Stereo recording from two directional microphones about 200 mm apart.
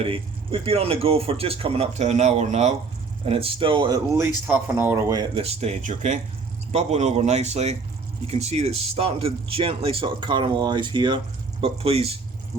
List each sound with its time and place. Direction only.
0.0 s speech: 25° right (ahead or behind)
5.3 s speech: 30° right (ahead or behind)